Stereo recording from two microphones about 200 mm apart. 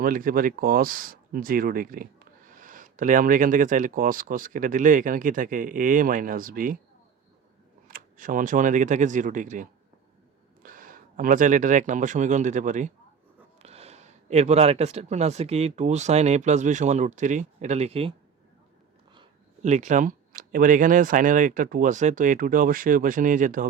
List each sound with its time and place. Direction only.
0.0 s speech: 45° right (ahead or behind)
7.9 s speech: 45° right (ahead or behind)
19.6 s speech: 35° right (ahead or behind)